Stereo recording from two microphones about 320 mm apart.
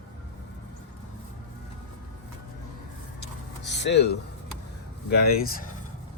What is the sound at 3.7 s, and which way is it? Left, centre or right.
Speech, left.